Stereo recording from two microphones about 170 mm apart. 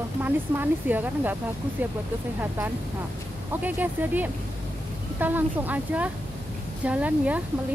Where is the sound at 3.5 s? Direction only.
10° right (ahead or behind).